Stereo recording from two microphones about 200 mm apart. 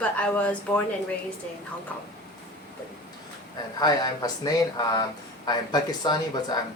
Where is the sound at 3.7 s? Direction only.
20° left (ahead or behind).